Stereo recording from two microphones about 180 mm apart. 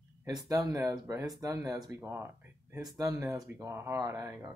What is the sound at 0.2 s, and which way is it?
Speech, 20° right (ahead or behind).